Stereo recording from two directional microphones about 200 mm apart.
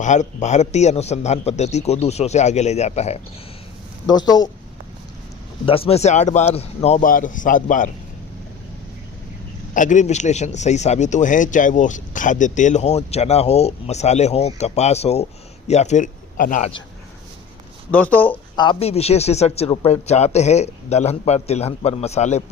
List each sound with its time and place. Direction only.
0.0 s a man's voice: 35° left (ahead or behind)
4.0 s speech: 20° left (ahead or behind)
5.6 s a man's voice: 30° left (ahead or behind)
9.7 s a man's voice: 40° left (ahead or behind)
17.9 s speech: 10° left (ahead or behind)
18.5 s a man's voice: 25° left (ahead or behind)